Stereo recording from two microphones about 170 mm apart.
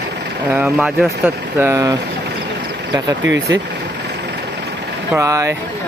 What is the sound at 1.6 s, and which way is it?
Mantra, 20° right (ahead or behind).